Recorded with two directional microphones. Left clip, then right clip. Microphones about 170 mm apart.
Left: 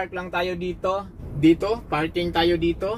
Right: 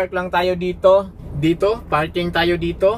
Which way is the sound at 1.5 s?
30° right (ahead or behind).